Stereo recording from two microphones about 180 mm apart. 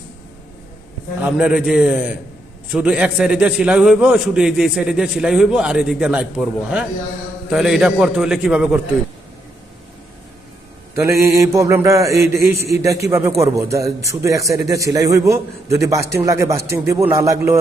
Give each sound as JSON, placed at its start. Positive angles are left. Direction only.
{"t": 1.2, "sound": "a man's voice", "side_deg": -5}
{"t": 10.9, "sound": "a man's voice", "side_deg": -15}